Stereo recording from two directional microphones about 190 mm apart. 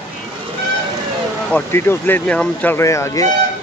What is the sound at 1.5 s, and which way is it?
Speech, 15° left (ahead or behind).